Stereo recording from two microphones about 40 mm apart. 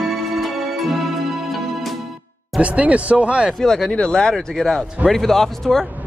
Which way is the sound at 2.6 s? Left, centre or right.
Right.